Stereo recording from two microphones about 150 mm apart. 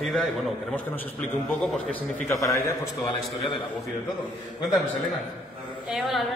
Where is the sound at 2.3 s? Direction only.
20° left (ahead or behind).